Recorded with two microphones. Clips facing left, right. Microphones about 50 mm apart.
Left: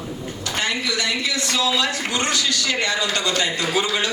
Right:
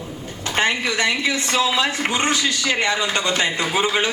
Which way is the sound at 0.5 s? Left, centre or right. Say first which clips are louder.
Right 4 dB; right.